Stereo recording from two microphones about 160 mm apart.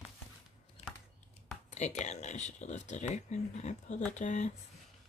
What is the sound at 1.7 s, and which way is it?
Speech, 45° left (ahead or behind).